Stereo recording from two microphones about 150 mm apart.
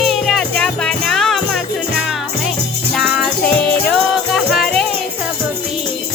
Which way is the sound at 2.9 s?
Centre (ahead or behind).